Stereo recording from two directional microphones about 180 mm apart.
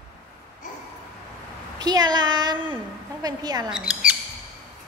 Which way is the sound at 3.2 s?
20° right (ahead or behind).